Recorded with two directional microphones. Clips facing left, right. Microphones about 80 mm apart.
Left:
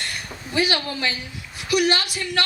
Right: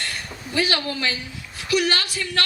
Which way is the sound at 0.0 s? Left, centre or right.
Centre.